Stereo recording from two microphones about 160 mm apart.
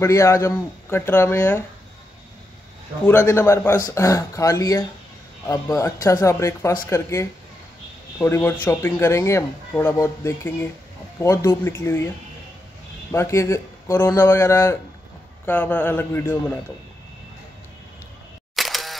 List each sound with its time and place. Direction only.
0.0 s speech: 20° left (ahead or behind)
3.1 s speech: 15° left (ahead or behind)
13.1 s speech: 15° left (ahead or behind)
18.6 s single-lens reflex camera: centre (ahead or behind)